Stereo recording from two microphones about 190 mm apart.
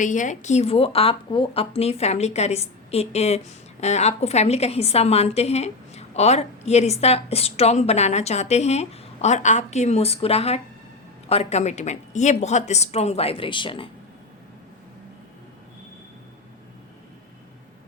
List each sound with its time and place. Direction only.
0.0 s a woman's voice: 40° left (ahead or behind)